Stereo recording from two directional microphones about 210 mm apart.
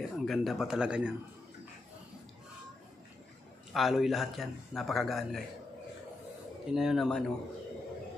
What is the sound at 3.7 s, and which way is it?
A man's voice, centre (ahead or behind).